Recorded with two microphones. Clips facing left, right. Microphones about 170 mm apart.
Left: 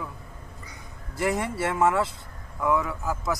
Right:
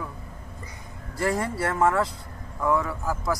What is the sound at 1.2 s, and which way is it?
Speech, centre (ahead or behind).